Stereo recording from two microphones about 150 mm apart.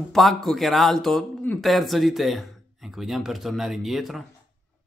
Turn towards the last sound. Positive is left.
turn(degrees=0)  # may be behind; listen again after turning